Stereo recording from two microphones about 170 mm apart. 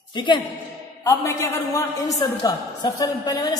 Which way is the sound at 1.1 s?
15° left (ahead or behind).